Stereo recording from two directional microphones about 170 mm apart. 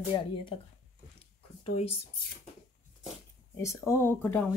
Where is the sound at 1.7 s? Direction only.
35° left (ahead or behind).